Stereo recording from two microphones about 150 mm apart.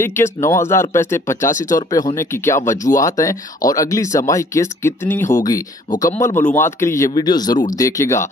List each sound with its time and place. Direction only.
0.0 s speech: 15° left (ahead or behind)